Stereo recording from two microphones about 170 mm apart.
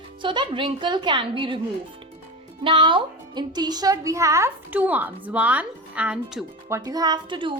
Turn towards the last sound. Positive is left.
turn(degrees=-30)  # may be behind; listen again after turning